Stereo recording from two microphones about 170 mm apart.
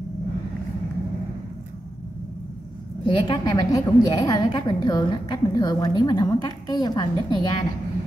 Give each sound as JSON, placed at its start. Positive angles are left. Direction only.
{"t": 3.1, "sound": "a woman's voice", "side_deg": 30}